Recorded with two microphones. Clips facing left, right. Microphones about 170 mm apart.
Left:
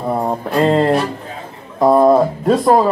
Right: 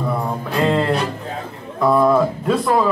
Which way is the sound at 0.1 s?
40° left (ahead or behind).